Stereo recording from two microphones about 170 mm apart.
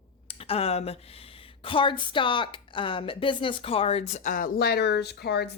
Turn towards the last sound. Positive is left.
turn(degrees=75)  # may be behind; listen again after turning